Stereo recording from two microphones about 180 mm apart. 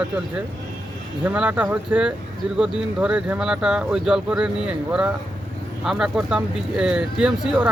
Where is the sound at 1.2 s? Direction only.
5° right (ahead or behind).